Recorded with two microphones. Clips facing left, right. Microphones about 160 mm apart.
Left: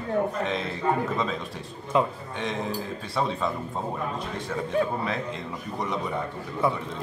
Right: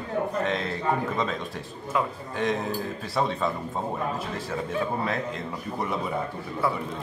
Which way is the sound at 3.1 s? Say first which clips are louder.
Right 1 dB; centre (ahead or behind).